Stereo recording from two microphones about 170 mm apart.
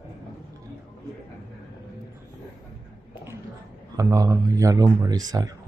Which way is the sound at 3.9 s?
20° right (ahead or behind).